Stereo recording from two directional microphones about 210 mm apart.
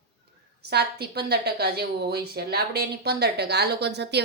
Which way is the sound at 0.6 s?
50° right (ahead or behind).